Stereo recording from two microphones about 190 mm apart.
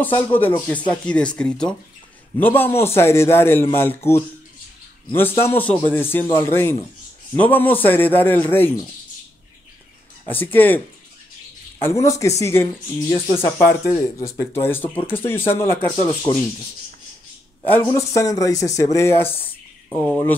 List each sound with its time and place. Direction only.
0.0 s a man's voice: 10° left (ahead or behind)
10.2 s a man's voice: 10° left (ahead or behind)
11.8 s a man's voice: 15° left (ahead or behind)
17.6 s a man's voice: 15° left (ahead or behind)
20.0 s speech: 5° left (ahead or behind)